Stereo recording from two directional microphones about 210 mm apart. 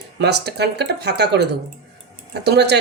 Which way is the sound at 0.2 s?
50° right (ahead or behind).